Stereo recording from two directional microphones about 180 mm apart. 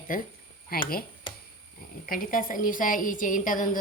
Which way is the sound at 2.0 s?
50° left (ahead or behind).